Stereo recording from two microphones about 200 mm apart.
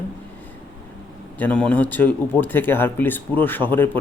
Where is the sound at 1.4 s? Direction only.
5° left (ahead or behind).